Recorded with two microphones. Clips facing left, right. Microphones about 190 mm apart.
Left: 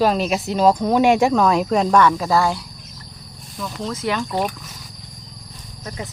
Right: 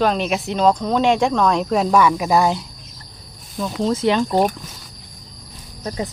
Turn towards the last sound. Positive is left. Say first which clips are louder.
# right 6 dB
turn(degrees=-35)  # may be behind; listen again after turning